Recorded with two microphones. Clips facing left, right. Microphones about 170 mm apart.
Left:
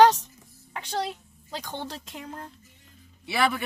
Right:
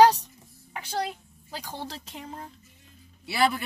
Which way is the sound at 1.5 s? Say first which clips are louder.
Left 3 dB; 80° left.